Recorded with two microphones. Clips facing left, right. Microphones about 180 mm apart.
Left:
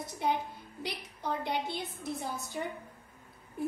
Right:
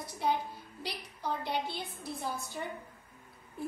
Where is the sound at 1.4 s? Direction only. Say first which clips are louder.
Left 1 dB; 20° left (ahead or behind).